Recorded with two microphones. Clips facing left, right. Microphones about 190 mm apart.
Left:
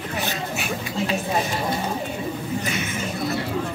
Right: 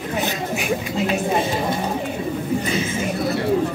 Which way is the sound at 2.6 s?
30° right (ahead or behind).